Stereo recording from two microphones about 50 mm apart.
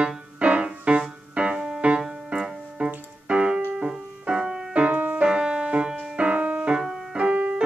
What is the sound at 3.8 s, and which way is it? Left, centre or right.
Music, centre.